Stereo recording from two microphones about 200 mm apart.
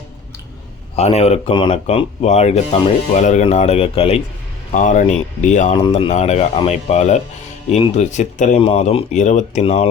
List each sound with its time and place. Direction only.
0.9 s speech: 30° left (ahead or behind)
4.7 s speech: 40° left (ahead or behind)